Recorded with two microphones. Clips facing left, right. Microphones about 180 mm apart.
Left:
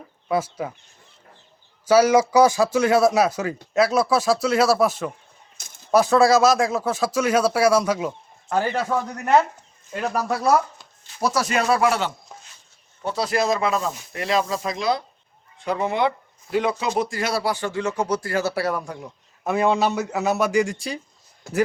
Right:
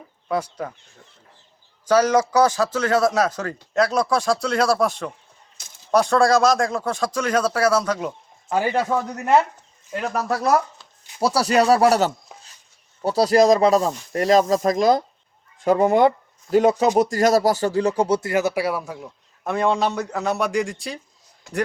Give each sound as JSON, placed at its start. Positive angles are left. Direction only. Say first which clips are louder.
{"t": 0.3, "sound": "speech", "louder": "left 1 dB", "side_deg": 5}
{"t": 1.9, "sound": "speech", "louder": "left 2 dB", "side_deg": 10}
{"t": 8.4, "sound": "speech", "louder": "right 2 dB", "side_deg": -10}
{"t": 10.1, "sound": "speech", "louder": "even", "side_deg": 0}
{"t": 11.2, "sound": "speech", "louder": "right 4 dB", "side_deg": -35}